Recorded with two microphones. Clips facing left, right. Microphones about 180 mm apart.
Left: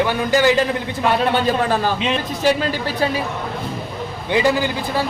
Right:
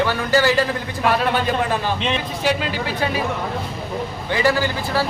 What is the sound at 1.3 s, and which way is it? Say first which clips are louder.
Speech: left 3 dB; 30° left (ahead or behind).